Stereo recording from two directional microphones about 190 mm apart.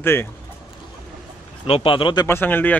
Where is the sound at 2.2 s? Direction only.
10° left (ahead or behind).